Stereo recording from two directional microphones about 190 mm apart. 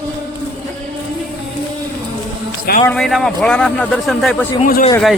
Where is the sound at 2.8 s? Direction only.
Centre (ahead or behind).